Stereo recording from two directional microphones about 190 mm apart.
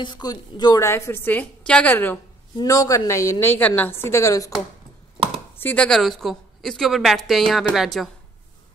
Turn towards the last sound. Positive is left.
turn(degrees=0)  # may be behind; listen again after turning